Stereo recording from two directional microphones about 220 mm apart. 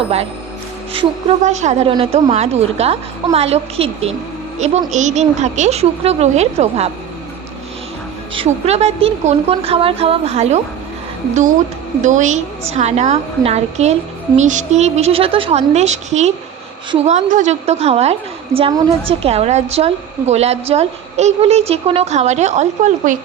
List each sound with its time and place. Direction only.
0.9 s a woman's voice: 30° right (ahead or behind)
8.4 s a woman's voice: 30° right (ahead or behind)
12.0 s a woman's voice: 35° right (ahead or behind)